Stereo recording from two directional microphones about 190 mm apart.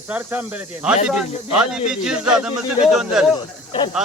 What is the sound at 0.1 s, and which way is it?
Speech, 10° right (ahead or behind).